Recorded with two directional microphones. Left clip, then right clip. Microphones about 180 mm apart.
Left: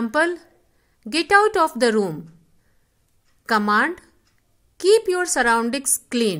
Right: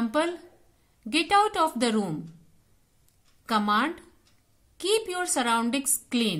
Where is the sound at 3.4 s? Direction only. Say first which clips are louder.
Left 6 dB; 45° left (ahead or behind).